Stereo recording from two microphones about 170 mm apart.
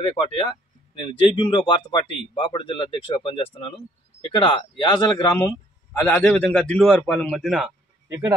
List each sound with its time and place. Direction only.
0.0 s speech: 30° left (ahead or behind)
5.9 s a man's voice: 10° left (ahead or behind)
8.1 s speech: 15° right (ahead or behind)